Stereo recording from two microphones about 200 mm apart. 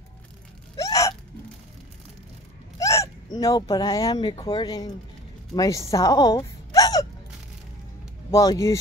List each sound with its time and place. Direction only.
0.7 s hiccup: 15° left (ahead or behind)
2.8 s speech: 15° left (ahead or behind)
8.3 s speech: 15° left (ahead or behind)